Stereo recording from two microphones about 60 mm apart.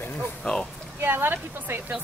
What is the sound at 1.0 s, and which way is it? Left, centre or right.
Speech, right.